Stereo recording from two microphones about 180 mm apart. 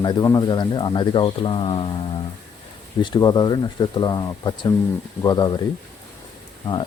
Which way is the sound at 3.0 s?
25° left (ahead or behind).